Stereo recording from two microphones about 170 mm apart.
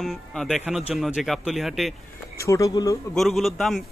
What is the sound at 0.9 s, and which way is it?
Speech, centre (ahead or behind).